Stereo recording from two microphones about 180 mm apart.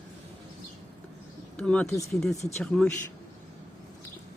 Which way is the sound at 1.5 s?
5° left (ahead or behind).